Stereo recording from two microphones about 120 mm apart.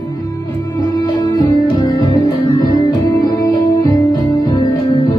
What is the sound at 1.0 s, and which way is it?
Music, 30° left (ahead or behind).